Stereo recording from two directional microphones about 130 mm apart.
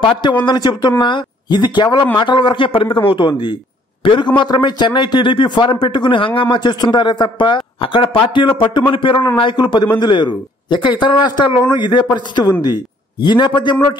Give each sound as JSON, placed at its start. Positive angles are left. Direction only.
{"t": 0.0, "sound": "a man's voice", "side_deg": 40}